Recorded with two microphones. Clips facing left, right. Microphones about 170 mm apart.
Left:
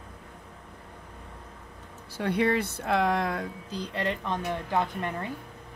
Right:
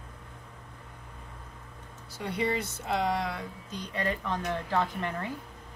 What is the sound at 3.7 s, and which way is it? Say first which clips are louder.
Speech: left 1 dB; 30° left (ahead or behind).